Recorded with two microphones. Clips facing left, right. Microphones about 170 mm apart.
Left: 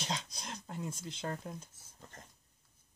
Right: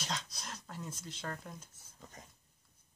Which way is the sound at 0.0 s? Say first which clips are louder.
Left 2 dB; 25° left (ahead or behind).